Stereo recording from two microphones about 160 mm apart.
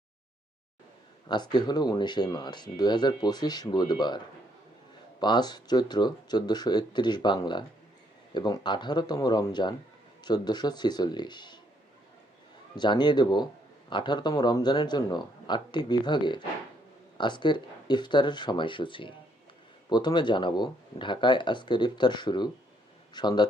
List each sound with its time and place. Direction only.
1.3 s speech: 25° left (ahead or behind)
5.2 s speech: 25° left (ahead or behind)
12.7 s speech: 30° left (ahead or behind)